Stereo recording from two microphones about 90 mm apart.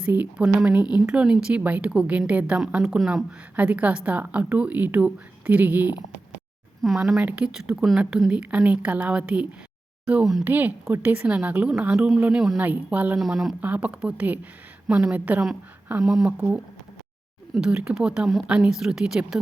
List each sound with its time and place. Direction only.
0.0 s a woman's voice: 15° right (ahead or behind)
6.8 s a woman's voice: 5° right (ahead or behind)
12.5 s a woman's voice: 20° right (ahead or behind)
13.1 s speech: centre (ahead or behind)
13.6 s a woman's voice: 15° right (ahead or behind)
16.0 s a woman's voice: 5° right (ahead or behind)